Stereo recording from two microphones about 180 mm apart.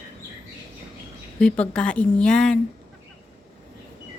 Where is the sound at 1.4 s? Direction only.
5° left (ahead or behind).